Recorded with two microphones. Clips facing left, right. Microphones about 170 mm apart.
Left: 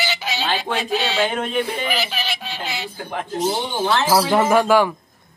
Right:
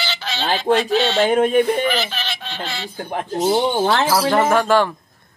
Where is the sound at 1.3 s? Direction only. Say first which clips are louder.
Right 8 dB; 45° right (ahead or behind).